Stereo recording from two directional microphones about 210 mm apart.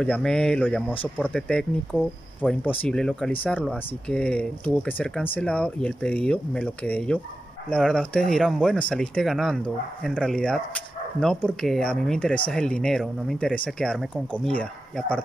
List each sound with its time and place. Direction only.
0.0 s speech: 5° left (ahead or behind)